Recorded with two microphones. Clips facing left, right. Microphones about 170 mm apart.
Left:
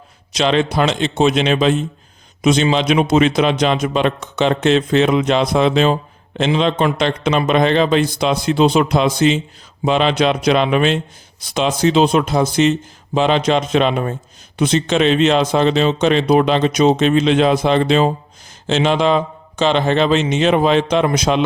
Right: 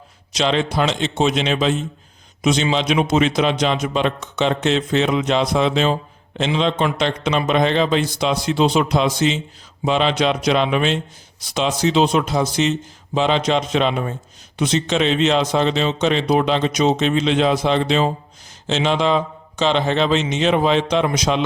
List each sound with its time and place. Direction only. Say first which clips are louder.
0.3 s a man's voice: left 3 dB; 60° left (ahead or behind)